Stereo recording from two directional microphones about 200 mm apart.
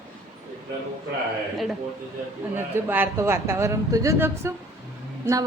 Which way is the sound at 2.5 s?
10° right (ahead or behind).